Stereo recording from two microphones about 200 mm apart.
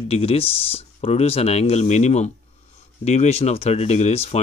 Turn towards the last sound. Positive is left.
turn(degrees=30)  # may be behind; listen again after turning